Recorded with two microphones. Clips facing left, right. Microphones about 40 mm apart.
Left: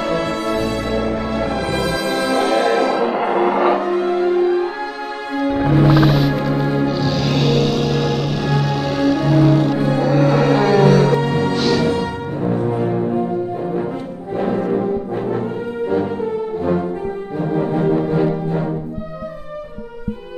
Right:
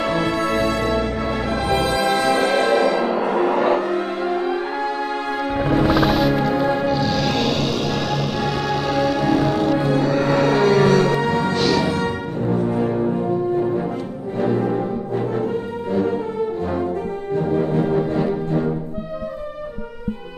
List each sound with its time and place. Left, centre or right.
0.0 s music: centre
1.9 s music: centre
3.6 s music: centre
17.4 s brass instrument: centre